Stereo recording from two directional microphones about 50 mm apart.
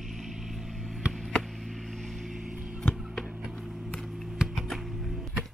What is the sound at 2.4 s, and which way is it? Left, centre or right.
Music, centre.